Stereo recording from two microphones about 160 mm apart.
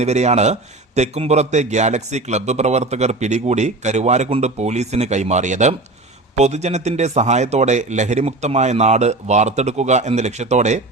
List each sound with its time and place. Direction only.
0.0 s a man's voice: 45° right (ahead or behind)